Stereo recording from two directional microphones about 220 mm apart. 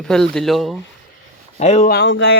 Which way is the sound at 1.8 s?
50° left (ahead or behind).